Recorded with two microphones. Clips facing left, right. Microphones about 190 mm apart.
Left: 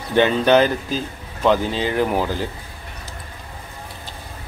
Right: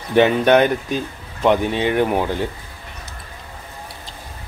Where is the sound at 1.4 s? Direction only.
20° right (ahead or behind).